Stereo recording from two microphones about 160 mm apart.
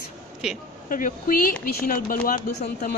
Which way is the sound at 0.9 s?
60° left (ahead or behind).